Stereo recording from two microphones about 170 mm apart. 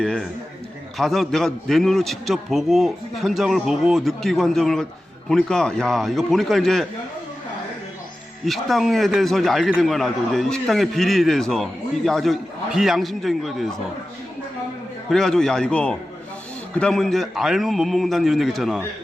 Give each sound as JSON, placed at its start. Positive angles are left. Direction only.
{"t": 0.0, "sound": "a man's voice", "side_deg": 5}
{"t": 8.4, "sound": "a man's voice", "side_deg": 0}
{"t": 15.1, "sound": "a man's voice", "side_deg": 0}